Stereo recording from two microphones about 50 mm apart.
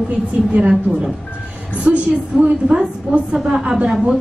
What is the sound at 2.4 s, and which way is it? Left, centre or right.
A woman's voice, right.